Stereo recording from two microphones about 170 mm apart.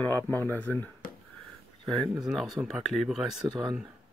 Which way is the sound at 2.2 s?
Centre (ahead or behind).